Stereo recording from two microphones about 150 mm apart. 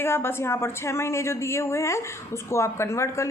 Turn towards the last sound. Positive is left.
turn(degrees=20)  # may be behind; listen again after turning